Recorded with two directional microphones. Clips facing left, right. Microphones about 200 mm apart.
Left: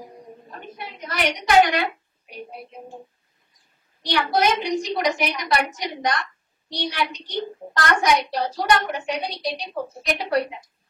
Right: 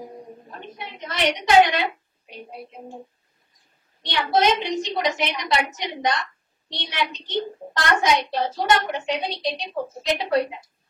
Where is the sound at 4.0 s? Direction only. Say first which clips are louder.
Even; 25° right (ahead or behind).